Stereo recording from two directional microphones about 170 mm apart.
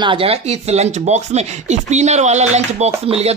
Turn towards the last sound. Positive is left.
turn(degrees=-35)  # may be behind; listen again after turning